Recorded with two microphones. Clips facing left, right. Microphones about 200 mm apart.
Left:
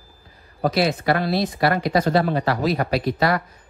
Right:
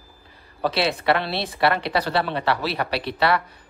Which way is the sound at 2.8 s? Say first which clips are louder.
Left 2 dB; 70° right (ahead or behind).